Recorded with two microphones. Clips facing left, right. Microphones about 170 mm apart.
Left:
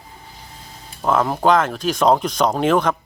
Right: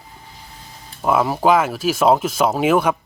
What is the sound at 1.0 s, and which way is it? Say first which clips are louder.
Speech: right 1 dB; 10° right (ahead or behind).